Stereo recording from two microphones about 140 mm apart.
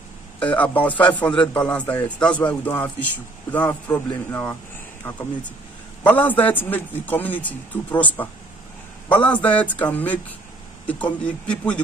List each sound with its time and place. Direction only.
0.4 s speech: 10° left (ahead or behind)
6.0 s speech: 10° left (ahead or behind)